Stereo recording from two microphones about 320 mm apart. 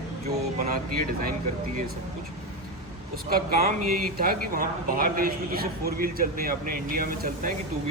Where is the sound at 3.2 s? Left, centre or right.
Right.